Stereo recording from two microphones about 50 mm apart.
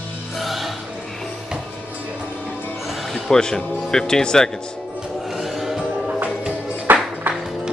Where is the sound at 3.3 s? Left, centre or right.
Centre.